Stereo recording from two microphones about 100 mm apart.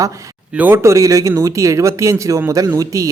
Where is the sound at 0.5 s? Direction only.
20° right (ahead or behind).